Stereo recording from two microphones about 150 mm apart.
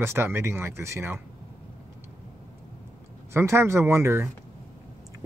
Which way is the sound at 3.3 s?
15° right (ahead or behind).